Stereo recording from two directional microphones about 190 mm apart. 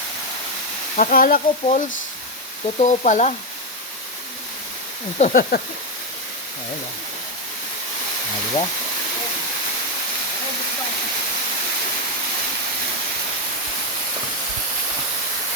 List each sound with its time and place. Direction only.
0.9 s speech: 50° left (ahead or behind)
2.7 s speech: 35° left (ahead or behind)
5.1 s speech: 40° left (ahead or behind)